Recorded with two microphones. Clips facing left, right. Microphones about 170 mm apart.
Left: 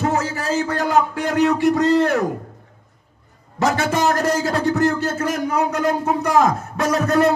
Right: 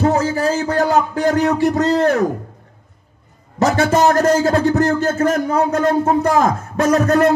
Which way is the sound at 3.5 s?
45° right (ahead or behind).